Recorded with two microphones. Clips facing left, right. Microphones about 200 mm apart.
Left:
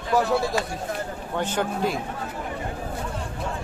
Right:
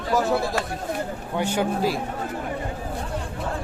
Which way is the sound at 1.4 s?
10° right (ahead or behind).